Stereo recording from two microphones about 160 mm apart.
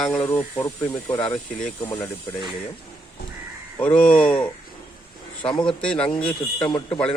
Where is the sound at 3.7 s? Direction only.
10° left (ahead or behind).